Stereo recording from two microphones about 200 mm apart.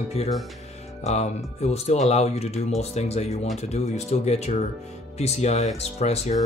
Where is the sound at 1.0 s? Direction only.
35° left (ahead or behind).